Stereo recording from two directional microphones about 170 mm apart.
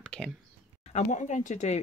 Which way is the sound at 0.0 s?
5° left (ahead or behind).